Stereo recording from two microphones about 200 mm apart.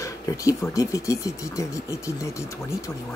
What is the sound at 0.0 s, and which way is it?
Speech, 15° left (ahead or behind).